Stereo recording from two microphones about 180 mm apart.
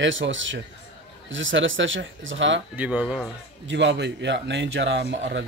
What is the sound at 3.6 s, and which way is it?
Speech, 80° right.